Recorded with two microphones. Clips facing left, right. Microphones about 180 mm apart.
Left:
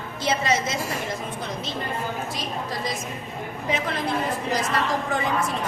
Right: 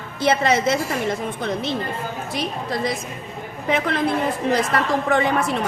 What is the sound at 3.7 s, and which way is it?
Speech, 60° right (ahead or behind).